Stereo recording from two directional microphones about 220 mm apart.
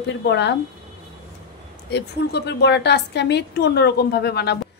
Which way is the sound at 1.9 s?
50° left (ahead or behind).